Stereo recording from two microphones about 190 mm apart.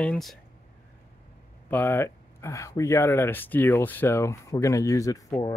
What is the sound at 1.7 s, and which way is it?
Speech, 10° left (ahead or behind).